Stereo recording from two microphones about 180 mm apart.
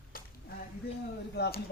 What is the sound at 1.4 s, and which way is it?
Speech, 60° left (ahead or behind).